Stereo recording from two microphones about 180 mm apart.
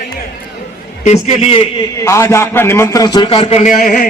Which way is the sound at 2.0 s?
15° left (ahead or behind).